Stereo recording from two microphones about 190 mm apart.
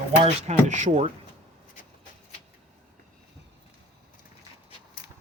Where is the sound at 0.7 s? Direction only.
40° right (ahead or behind).